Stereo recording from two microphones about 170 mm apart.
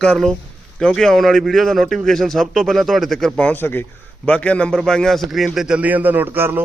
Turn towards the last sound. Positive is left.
turn(degrees=-10)  # may be behind; listen again after turning